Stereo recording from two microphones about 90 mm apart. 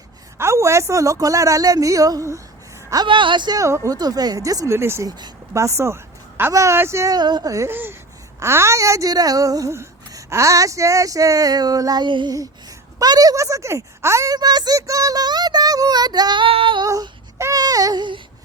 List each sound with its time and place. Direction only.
0.3 s speech: 30° right (ahead or behind)
3.1 s speech: 65° right (ahead or behind)
3.6 s speech: 35° right (ahead or behind)
7.1 s child singing: 50° right (ahead or behind)
7.5 s speech: 30° right (ahead or behind); by 12.0 s 45° right (ahead or behind)
12.0 s speech: 60° right (ahead or behind)
13.0 s speech: 45° right (ahead or behind)
14.3 s child singing: 50° right (ahead or behind); by 16.8 s 80° right
16.8 s child singing: 40° right (ahead or behind)
17.5 s a sound: 45° right (ahead or behind)